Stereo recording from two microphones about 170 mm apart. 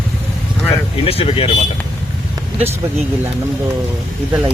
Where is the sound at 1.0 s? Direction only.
35° left (ahead or behind).